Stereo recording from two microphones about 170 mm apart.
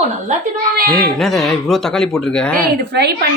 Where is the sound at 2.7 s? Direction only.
70° right (ahead or behind).